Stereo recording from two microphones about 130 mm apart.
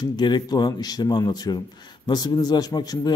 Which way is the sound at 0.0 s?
35° left (ahead or behind).